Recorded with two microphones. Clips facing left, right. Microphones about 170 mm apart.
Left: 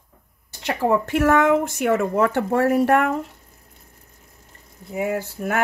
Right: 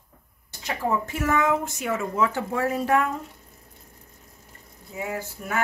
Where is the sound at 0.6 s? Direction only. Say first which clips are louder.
Left 6 dB; 70° left (ahead or behind).